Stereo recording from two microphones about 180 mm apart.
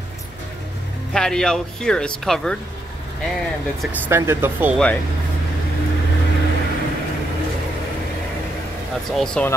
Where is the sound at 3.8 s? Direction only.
10° right (ahead or behind).